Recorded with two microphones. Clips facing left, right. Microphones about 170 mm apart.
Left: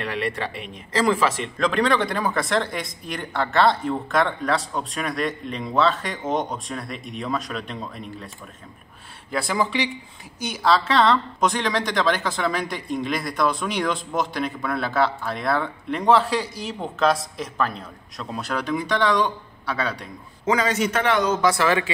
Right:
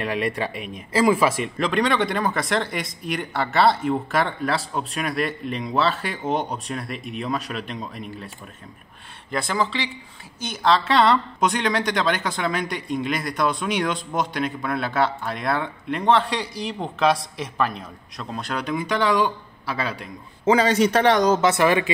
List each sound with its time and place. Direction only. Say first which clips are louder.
0.0 s speech: right 2 dB; 15° right (ahead or behind)
1.7 s speech: even; centre (ahead or behind)
9.3 s speech: left 1 dB; 10° left (ahead or behind)
20.4 s a man's voice: right 4 dB; 30° right (ahead or behind)
21.4 s speech: right 2 dB; 20° right (ahead or behind)